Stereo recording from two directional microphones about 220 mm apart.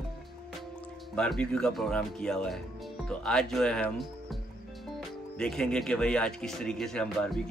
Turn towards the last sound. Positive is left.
turn(degrees=5)  # may be behind; listen again after turning